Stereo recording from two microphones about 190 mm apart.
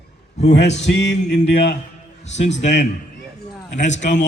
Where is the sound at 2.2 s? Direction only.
35° left (ahead or behind).